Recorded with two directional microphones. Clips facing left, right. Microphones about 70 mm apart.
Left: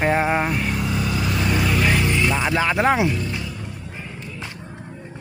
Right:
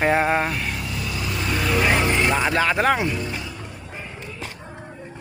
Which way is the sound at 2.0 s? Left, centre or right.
Right.